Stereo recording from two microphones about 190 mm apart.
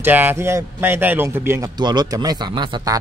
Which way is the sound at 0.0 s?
10° right (ahead or behind).